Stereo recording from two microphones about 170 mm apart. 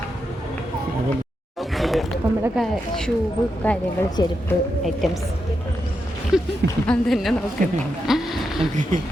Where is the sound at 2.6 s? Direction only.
5° left (ahead or behind).